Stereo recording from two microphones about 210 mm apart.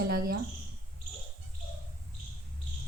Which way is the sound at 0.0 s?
45° right (ahead or behind).